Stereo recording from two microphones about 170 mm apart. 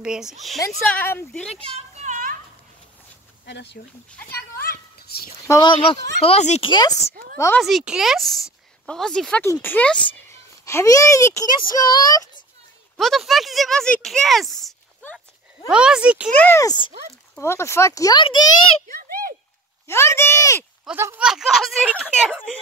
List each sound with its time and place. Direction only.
0.0 s speech: 5° right (ahead or behind)
0.6 s speech: 15° left (ahead or behind)
1.6 s a sound: 40° right (ahead or behind)
3.4 s speech: 90° left
4.3 s a sound: 65° left (ahead or behind)
5.5 s speech: 25° left (ahead or behind)
7.3 s speech: 15° left (ahead or behind)
7.6 s speech: 5° right (ahead or behind); by 12.2 s 20° left (ahead or behind)
12.9 s speech: centre (ahead or behind)
16.3 s speech: 15° left (ahead or behind)
18.9 s a sound: 60° right (ahead or behind)
19.9 s speech: 15° left (ahead or behind)
20.8 s speech: 15° right (ahead or behind)
21.3 s speech: centre (ahead or behind)